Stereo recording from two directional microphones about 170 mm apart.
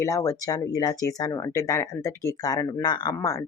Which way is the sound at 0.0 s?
15° left (ahead or behind).